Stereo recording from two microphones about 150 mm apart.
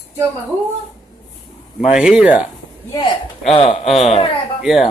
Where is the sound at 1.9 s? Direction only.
5° right (ahead or behind).